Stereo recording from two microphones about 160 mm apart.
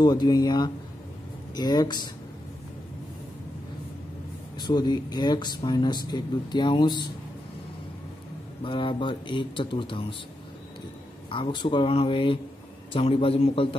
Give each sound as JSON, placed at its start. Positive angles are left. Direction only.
{"t": 0.0, "sound": "speech", "side_deg": 25}
{"t": 4.6, "sound": "speech", "side_deg": 25}
{"t": 8.6, "sound": "speech", "side_deg": 30}
{"t": 11.2, "sound": "speech", "side_deg": 30}